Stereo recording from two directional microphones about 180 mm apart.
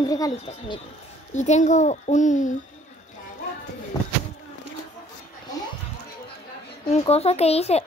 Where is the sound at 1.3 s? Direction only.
40° left (ahead or behind).